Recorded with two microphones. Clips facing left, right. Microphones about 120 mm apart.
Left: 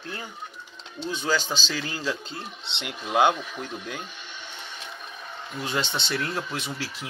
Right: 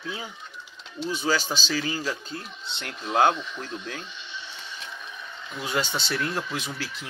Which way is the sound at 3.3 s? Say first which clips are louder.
Even; 50° left (ahead or behind).